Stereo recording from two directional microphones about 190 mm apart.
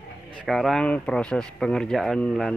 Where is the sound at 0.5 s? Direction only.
Centre (ahead or behind).